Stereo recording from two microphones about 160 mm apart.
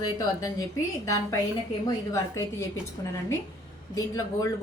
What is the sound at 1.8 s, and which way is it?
A woman's voice, 20° left (ahead or behind).